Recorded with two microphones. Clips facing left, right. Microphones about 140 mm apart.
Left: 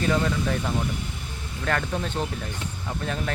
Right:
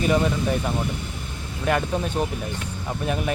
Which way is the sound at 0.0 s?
15° right (ahead or behind).